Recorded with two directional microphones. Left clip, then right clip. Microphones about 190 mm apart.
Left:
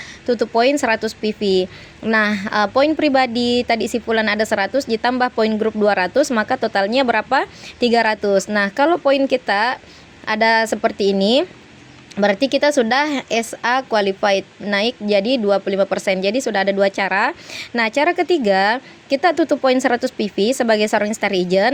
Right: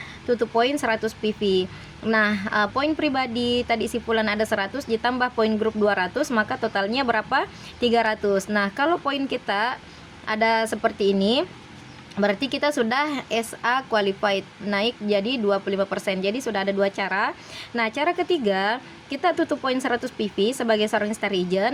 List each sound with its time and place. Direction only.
0.3 s a woman's voice: 25° left (ahead or behind)